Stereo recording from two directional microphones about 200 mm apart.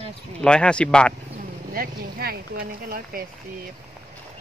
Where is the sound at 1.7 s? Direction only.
50° right (ahead or behind).